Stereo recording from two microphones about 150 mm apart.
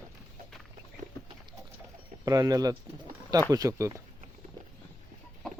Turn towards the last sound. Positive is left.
turn(degrees=-25)  # may be behind; listen again after turning